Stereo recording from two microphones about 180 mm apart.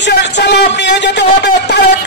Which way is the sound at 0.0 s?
70° left (ahead or behind).